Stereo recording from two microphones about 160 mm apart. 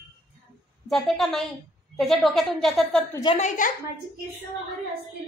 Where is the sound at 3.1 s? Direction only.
30° left (ahead or behind).